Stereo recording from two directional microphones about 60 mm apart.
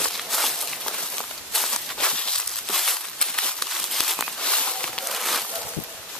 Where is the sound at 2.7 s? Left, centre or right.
Centre.